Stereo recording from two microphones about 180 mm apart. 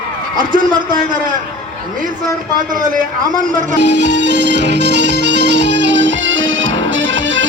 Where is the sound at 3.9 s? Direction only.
75° right (ahead or behind).